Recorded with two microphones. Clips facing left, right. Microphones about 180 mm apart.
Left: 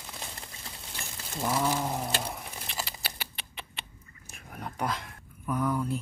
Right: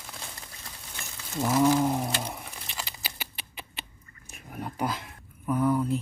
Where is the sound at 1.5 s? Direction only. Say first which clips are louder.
Right 7 dB; 10° right (ahead or behind).